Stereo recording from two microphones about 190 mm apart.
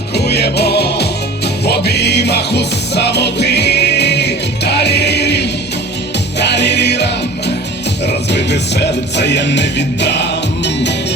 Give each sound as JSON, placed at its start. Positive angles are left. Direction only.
{"t": 0.1, "sound": "music", "side_deg": 60}